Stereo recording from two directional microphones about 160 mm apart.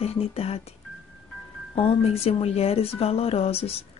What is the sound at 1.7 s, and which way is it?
A woman's voice, 40° left (ahead or behind).